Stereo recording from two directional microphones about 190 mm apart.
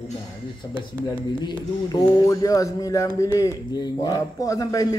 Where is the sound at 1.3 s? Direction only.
20° left (ahead or behind).